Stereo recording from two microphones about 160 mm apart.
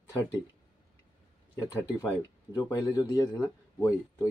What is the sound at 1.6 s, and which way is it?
Speech, 20° left (ahead or behind).